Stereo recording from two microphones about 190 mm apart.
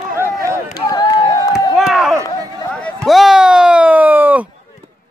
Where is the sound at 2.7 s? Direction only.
5° left (ahead or behind).